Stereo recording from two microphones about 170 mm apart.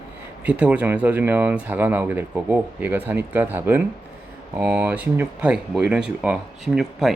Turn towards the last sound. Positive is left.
turn(degrees=-5)  # may be behind; listen again after turning